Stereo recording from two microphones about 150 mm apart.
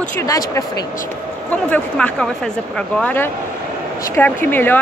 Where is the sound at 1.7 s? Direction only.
10° left (ahead or behind).